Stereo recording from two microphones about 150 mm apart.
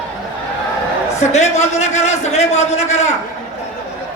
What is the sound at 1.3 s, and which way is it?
A man's voice, 50° left (ahead or behind).